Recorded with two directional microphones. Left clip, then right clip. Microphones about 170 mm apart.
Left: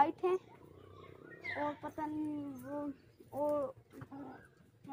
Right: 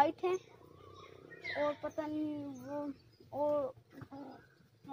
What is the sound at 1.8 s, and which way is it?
Speech, 45° right (ahead or behind).